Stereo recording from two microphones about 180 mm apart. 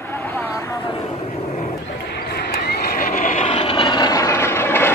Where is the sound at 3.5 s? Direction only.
30° left (ahead or behind); by 4.9 s 15° left (ahead or behind).